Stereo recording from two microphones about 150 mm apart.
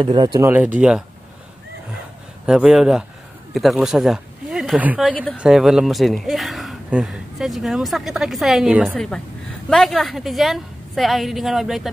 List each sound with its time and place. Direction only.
0.0 s speech: 30° right (ahead or behind)
0.5 s speech: 10° right (ahead or behind)
2.4 s speech: 5° right (ahead or behind)
5.1 s speech: 10° left (ahead or behind)
5.4 s speech: 5° right (ahead or behind)